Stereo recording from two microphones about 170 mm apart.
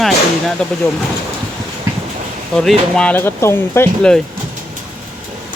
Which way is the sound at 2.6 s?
5° left (ahead or behind).